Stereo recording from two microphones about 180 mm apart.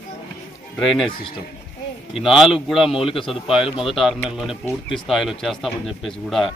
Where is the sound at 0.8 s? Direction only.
Centre (ahead or behind).